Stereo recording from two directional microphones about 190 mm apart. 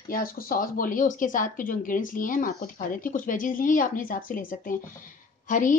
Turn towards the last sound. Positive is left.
turn(degrees=45)  # may be behind; listen again after turning